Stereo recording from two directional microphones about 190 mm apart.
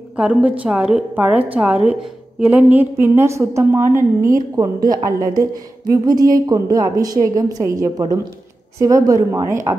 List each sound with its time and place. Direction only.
0.1 s a woman's voice: 5° right (ahead or behind)